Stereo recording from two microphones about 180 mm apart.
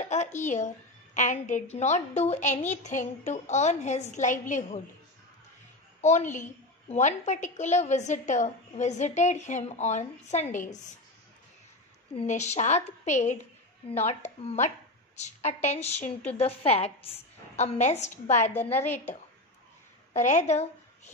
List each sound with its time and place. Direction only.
0.0 s a woman's voice: 40° left (ahead or behind)
5.9 s a woman's voice: 40° left (ahead or behind)
12.2 s a woman's voice: 40° left (ahead or behind)
20.1 s a woman's voice: 40° left (ahead or behind)